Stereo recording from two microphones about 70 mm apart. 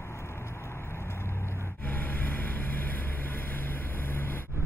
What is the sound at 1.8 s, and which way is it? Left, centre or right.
Vehicle, left.